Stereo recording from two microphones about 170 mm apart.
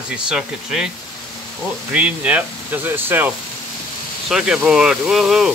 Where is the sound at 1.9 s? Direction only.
5° right (ahead or behind).